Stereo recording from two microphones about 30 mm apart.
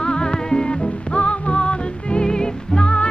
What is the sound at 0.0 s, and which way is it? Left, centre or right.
Music, left.